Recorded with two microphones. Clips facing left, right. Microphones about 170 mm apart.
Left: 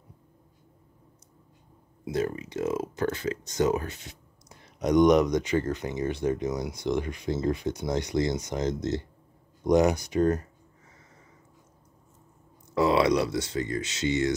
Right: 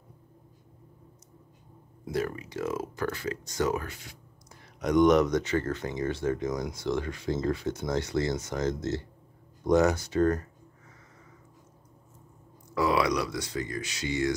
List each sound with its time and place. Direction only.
2.0 s speech: 20° left (ahead or behind)
12.7 s speech: 25° left (ahead or behind)